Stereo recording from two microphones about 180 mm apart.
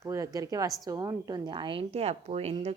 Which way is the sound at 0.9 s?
20° right (ahead or behind).